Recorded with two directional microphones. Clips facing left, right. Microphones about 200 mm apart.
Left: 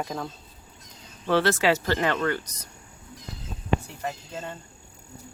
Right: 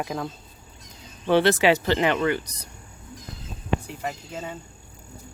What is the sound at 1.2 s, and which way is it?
Speech, 15° right (ahead or behind).